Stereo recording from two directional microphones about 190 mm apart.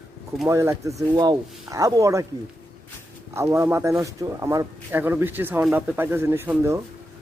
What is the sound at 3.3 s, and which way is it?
Speech, 15° right (ahead or behind).